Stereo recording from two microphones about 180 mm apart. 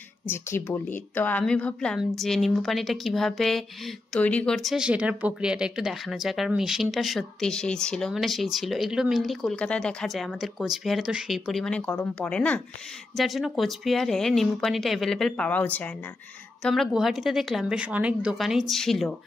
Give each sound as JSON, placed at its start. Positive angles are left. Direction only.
{"t": 0.3, "sound": "a woman's voice", "side_deg": 15}